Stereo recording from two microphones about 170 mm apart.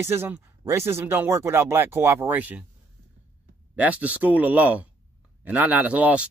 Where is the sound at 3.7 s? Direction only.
10° right (ahead or behind).